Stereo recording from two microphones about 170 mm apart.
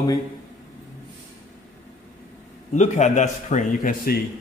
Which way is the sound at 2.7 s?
45° left (ahead or behind).